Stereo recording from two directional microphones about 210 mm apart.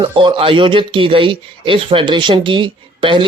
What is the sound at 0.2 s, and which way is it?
Speech, 25° right (ahead or behind).